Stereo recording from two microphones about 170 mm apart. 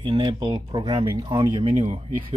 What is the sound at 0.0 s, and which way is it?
Speech, 30° right (ahead or behind).